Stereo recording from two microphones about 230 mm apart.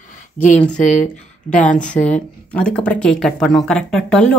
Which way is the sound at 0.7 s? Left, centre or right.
Left.